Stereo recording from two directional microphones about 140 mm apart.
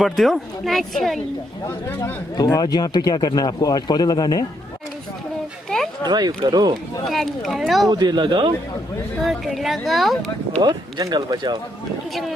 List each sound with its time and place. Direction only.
0.0 s speech: centre (ahead or behind)
2.3 s speech: 25° left (ahead or behind)
5.7 s a sound: 5° left (ahead or behind)
6.0 s speech: 30° right (ahead or behind)
7.1 s speech: centre (ahead or behind)
7.9 s speech: 30° right (ahead or behind)
9.2 s speech: centre (ahead or behind)
10.6 s speech: 25° right (ahead or behind)
12.1 s speech: centre (ahead or behind)